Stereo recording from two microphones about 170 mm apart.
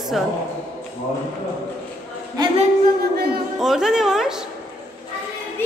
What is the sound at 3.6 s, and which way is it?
Speech, centre (ahead or behind).